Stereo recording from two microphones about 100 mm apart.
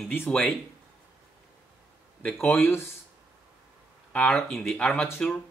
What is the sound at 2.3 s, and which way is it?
Speech, 25° left (ahead or behind).